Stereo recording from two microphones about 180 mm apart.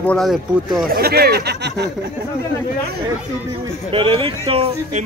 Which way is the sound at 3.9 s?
30° right (ahead or behind).